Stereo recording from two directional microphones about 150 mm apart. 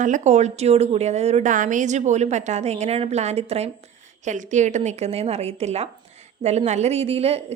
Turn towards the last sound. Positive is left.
turn(degrees=-45)  # may be behind; listen again after turning